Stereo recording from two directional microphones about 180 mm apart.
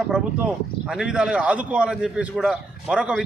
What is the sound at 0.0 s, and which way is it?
Speech, 5° right (ahead or behind).